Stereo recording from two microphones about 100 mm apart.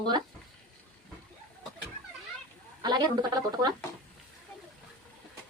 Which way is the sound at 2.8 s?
45° right (ahead or behind).